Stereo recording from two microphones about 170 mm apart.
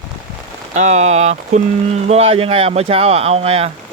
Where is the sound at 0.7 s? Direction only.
45° right (ahead or behind).